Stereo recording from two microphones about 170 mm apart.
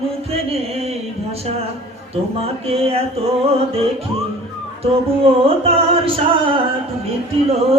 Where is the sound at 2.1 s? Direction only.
35° right (ahead or behind).